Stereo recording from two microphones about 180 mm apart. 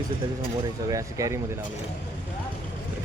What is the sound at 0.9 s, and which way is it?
Speech, 20° right (ahead or behind).